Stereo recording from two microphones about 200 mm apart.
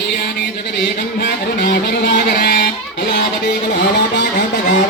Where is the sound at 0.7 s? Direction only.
55° left (ahead or behind).